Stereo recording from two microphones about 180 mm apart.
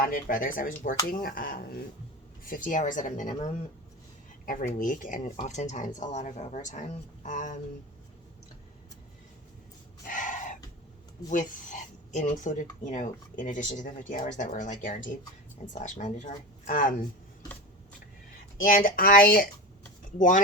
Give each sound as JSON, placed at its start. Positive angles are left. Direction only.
{"t": 0.0, "sound": "speech", "side_deg": 50}
{"t": 10.1, "sound": "a sound", "side_deg": 45}
{"t": 11.3, "sound": "speech", "side_deg": 45}
{"t": 18.6, "sound": "speech", "side_deg": 50}